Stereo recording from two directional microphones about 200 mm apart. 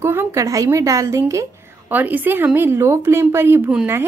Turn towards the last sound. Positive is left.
turn(degrees=-10)  # may be behind; listen again after turning